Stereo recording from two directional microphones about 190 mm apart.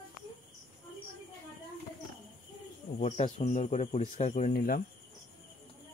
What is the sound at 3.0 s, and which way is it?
Speech, 35° left (ahead or behind).